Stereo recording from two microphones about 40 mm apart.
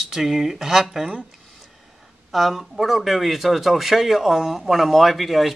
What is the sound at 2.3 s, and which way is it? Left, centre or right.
Speech, centre.